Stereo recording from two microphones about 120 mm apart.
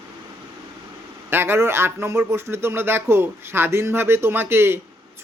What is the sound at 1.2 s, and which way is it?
A man's voice, 20° right (ahead or behind).